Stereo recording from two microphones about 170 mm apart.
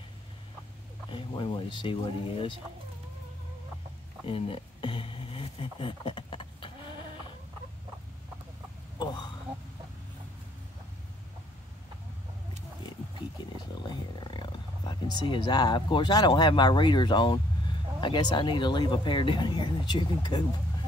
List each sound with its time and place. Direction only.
1.1 s speech: 30° left (ahead or behind)
4.3 s speech: 35° left (ahead or behind)
8.9 s a sound: 25° left (ahead or behind)
14.2 s speech: 25° left (ahead or behind)